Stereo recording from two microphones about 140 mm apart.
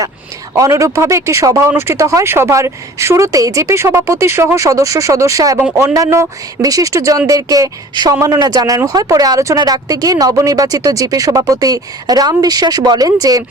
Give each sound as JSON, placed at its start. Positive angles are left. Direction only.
{"t": 0.5, "sound": "speech", "side_deg": -20}